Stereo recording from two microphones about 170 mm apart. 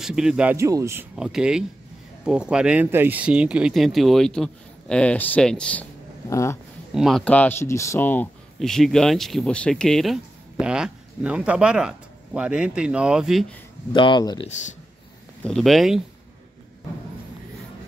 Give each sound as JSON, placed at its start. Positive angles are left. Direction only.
{"t": 0.0, "sound": "speech", "side_deg": -5}
{"t": 1.1, "sound": "speech", "side_deg": -5}
{"t": 6.9, "sound": "speech", "side_deg": 0}
{"t": 13.9, "sound": "speech", "side_deg": 30}
{"t": 14.5, "sound": "speech", "side_deg": 45}
{"t": 15.4, "sound": "speech", "side_deg": 0}